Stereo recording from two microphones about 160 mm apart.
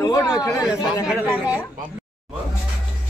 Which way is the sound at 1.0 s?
5° right (ahead or behind).